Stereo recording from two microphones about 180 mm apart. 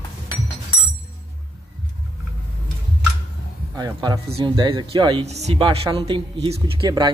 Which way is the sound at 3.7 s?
20° right (ahead or behind).